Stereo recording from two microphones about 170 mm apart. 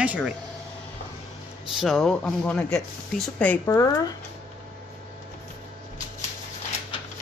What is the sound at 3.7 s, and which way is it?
Speech, 20° left (ahead or behind).